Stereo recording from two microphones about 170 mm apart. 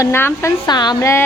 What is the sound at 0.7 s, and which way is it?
Speech, 25° left (ahead or behind).